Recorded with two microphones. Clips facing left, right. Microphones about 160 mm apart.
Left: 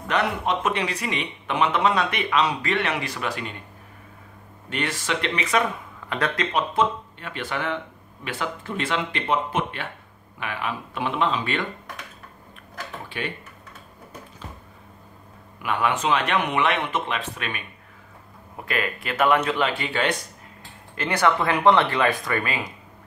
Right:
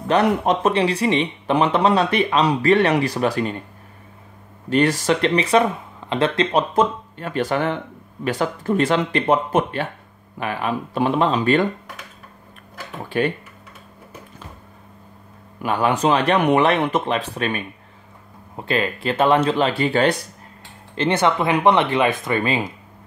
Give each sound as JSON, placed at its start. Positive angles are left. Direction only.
{"t": 0.1, "sound": "speech", "side_deg": -35}
{"t": 4.6, "sound": "speech", "side_deg": -40}
{"t": 6.7, "sound": "speech", "side_deg": -40}
{"t": 13.1, "sound": "speech", "side_deg": -45}
{"t": 15.6, "sound": "speech", "side_deg": -35}
{"t": 20.9, "sound": "speech", "side_deg": -25}